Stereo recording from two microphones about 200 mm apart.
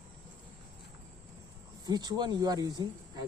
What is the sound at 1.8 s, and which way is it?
Speech, 20° right (ahead or behind).